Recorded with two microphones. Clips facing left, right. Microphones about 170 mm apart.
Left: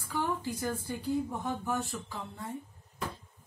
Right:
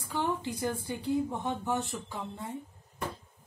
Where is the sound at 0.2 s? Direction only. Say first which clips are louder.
Right 2 dB; 20° right (ahead or behind).